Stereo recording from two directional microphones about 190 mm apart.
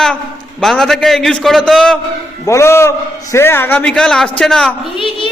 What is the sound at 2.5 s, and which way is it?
A man's voice, 15° left (ahead or behind).